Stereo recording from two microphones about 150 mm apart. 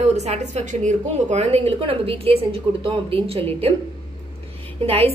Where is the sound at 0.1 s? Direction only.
45° right (ahead or behind).